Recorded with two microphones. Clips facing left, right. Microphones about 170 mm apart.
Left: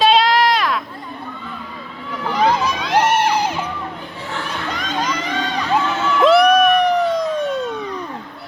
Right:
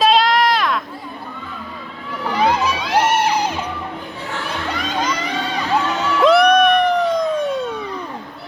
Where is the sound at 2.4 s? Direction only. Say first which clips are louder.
Even; 10° right (ahead or behind).